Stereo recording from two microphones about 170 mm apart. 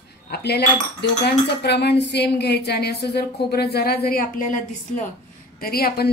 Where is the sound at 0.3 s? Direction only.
75° left (ahead or behind).